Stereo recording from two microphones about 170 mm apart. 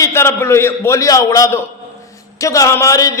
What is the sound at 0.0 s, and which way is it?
A man's voice, 15° left (ahead or behind).